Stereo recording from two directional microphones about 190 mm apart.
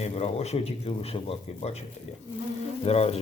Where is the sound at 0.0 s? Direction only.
35° left (ahead or behind).